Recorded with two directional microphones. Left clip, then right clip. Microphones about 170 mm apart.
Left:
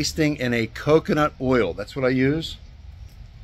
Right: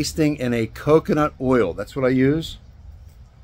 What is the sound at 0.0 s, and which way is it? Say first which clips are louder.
Speech: right 1 dB; 5° right (ahead or behind).